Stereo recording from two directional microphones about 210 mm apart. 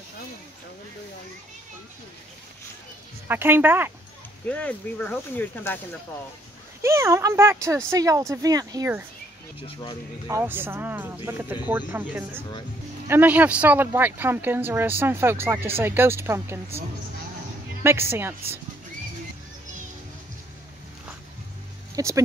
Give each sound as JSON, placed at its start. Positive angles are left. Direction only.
{"t": 3.3, "sound": "speech", "side_deg": -10}
{"t": 4.5, "sound": "speech", "side_deg": 5}
{"t": 6.8, "sound": "speech", "side_deg": -15}
{"t": 9.6, "sound": "speech", "side_deg": 25}
{"t": 10.2, "sound": "speech", "side_deg": -10}
{"t": 17.8, "sound": "speech", "side_deg": -10}
{"t": 21.9, "sound": "speech", "side_deg": -15}